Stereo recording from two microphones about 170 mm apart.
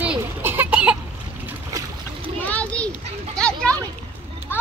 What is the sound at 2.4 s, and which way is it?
Children playing, 10° left (ahead or behind).